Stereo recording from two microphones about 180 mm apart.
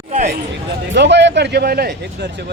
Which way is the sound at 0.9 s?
75° right (ahead or behind).